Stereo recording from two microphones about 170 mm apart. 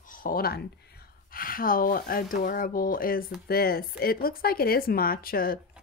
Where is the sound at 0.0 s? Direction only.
50° left (ahead or behind).